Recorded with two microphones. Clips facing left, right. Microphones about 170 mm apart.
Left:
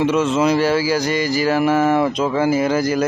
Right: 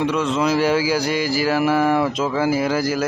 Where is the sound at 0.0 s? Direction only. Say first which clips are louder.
Left 3 dB; 5° left (ahead or behind).